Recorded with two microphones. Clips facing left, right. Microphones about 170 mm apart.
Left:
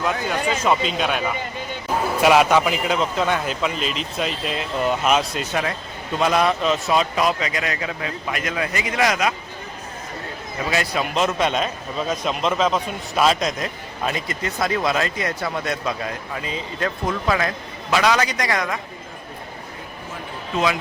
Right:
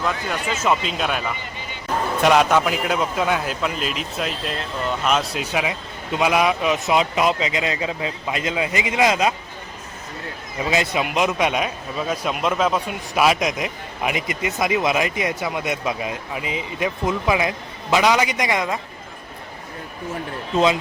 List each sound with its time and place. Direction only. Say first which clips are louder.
0.0 s a man's voice: left 2 dB; centre (ahead or behind)
5.4 s speech: even; 10° right (ahead or behind)
10.7 s speech: right 2 dB; 15° right (ahead or behind)